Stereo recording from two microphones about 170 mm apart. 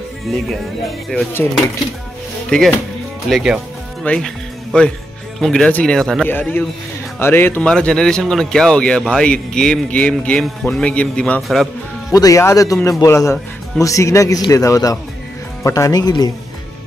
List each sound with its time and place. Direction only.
0.3 s speech: centre (ahead or behind)
2.5 s speech: 5° left (ahead or behind)
5.4 s speech: 5° left (ahead or behind)
12.1 s speech: 20° left (ahead or behind)